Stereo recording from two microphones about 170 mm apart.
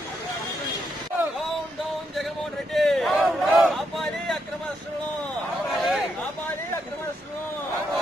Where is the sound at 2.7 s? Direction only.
Centre (ahead or behind).